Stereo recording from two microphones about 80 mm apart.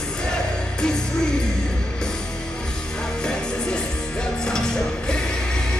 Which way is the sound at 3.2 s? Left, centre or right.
Centre.